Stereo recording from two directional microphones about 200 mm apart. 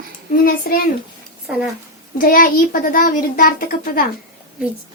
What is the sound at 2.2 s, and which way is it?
A child's voice, 45° left (ahead or behind).